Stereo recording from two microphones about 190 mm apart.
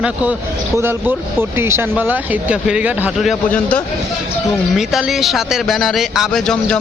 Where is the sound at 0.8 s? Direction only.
10° right (ahead or behind).